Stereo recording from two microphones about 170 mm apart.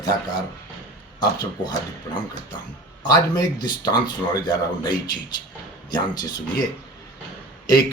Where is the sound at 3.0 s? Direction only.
25° left (ahead or behind).